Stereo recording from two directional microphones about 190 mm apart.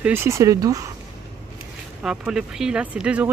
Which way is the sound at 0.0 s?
10° right (ahead or behind).